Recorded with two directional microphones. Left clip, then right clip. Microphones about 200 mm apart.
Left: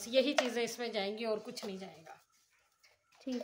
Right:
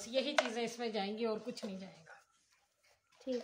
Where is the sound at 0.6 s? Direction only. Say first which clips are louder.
Left 2 dB; 40° left (ahead or behind).